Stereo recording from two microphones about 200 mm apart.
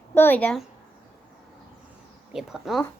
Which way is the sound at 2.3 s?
Centre (ahead or behind).